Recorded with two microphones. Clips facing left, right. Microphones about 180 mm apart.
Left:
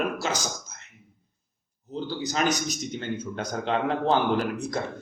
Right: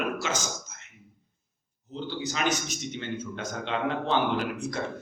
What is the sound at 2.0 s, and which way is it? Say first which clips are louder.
A man's voice: left 3 dB; 40° left (ahead or behind).